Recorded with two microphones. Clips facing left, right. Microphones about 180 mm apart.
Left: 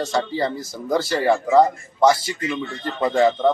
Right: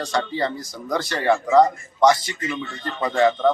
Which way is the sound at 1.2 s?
5° left (ahead or behind).